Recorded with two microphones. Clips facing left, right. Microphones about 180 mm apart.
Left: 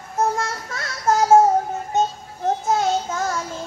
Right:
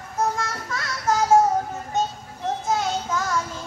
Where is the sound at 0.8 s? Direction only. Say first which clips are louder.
Left 4 dB; 50° left (ahead or behind).